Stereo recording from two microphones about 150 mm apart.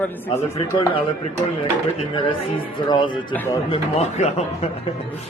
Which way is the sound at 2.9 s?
30° left (ahead or behind).